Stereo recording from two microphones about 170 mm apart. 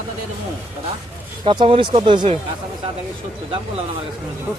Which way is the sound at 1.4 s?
30° right (ahead or behind).